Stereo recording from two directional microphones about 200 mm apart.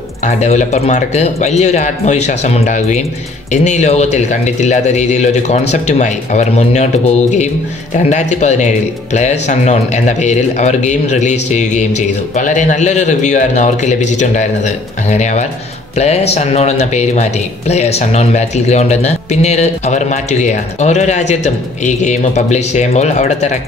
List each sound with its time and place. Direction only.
0.2 s speech: 35° left (ahead or behind)